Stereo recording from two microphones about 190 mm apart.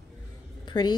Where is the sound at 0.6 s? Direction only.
20° left (ahead or behind).